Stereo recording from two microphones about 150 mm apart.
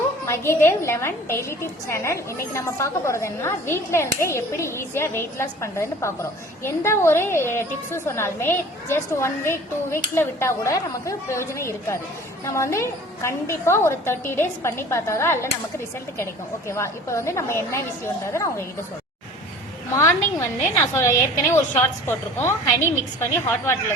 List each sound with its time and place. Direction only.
0.3 s a woman's voice: 15° left (ahead or behind)
19.9 s a woman's voice: 20° left (ahead or behind)